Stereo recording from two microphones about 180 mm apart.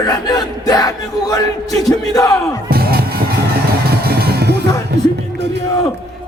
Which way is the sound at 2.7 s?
60° right (ahead or behind).